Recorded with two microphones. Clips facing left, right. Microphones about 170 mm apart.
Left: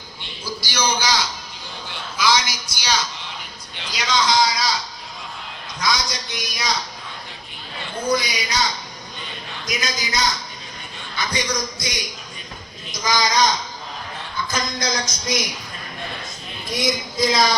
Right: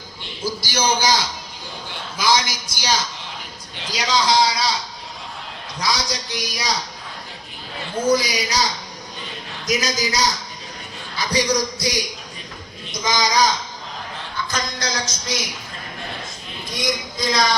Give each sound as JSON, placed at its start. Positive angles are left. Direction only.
{"t": 0.4, "sound": "speech", "side_deg": -50}
{"t": 2.1, "sound": "a woman's voice", "side_deg": -50}
{"t": 5.8, "sound": "a man's voice", "side_deg": -35}
{"t": 8.0, "sound": "a man's voice", "side_deg": -40}
{"t": 13.1, "sound": "a man's voice", "side_deg": -15}
{"t": 15.0, "sound": "a man's voice", "side_deg": -10}
{"t": 16.6, "sound": "speech", "side_deg": 0}